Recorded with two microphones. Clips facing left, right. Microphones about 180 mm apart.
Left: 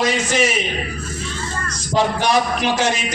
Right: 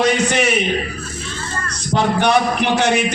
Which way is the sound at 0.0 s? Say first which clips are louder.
Right 2 dB; 65° right (ahead or behind).